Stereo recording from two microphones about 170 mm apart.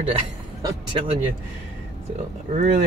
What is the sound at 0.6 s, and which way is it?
Speech, 30° right (ahead or behind).